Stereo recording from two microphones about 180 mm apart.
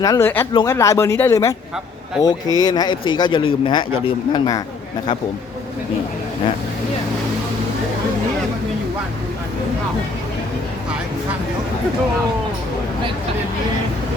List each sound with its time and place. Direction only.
0.0 s a man's voice: 15° left (ahead or behind)